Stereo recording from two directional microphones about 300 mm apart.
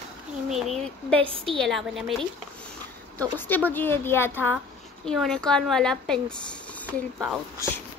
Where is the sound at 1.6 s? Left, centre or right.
Centre.